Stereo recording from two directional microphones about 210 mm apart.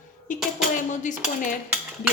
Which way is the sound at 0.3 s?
35° left (ahead or behind).